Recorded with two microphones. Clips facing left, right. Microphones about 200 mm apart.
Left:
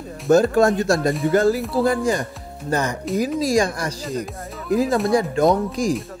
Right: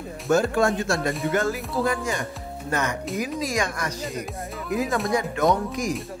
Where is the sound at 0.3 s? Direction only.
40° left (ahead or behind).